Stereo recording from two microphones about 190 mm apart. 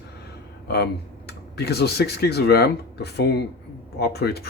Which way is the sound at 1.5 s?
60° left (ahead or behind).